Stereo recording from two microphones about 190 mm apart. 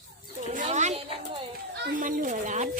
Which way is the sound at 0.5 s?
40° right (ahead or behind).